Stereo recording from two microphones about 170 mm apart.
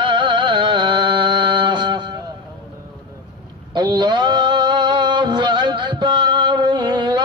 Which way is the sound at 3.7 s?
25° right (ahead or behind).